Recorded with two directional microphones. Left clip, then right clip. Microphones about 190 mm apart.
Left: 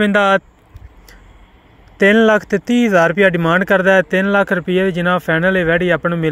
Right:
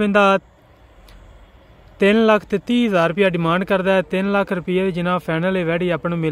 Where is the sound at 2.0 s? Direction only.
10° left (ahead or behind).